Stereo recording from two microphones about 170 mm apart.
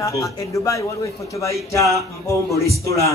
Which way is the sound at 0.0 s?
20° left (ahead or behind).